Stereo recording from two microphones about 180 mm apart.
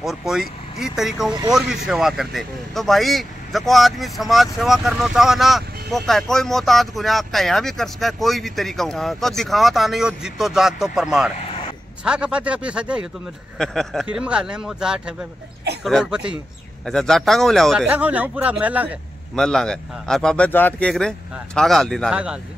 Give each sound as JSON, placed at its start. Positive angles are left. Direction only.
{"t": 0.0, "sound": "speech", "side_deg": 0}
{"t": 11.3, "sound": "a sound", "side_deg": 35}
{"t": 12.0, "sound": "speech", "side_deg": -5}
{"t": 19.3, "sound": "speech", "side_deg": 5}